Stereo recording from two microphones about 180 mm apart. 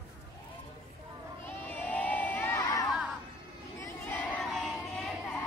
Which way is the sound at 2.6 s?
20° left (ahead or behind).